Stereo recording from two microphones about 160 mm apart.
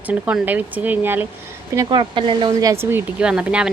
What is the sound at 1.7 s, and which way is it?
Speech, 25° right (ahead or behind).